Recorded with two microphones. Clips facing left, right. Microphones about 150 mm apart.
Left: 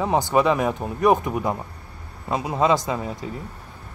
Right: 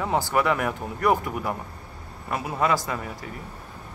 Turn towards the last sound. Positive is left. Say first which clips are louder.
# left 4 dB
turn(degrees=20)  # may be behind; listen again after turning